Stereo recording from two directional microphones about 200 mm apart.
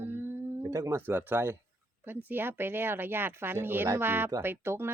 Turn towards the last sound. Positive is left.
turn(degrees=-10)  # may be behind; listen again after turning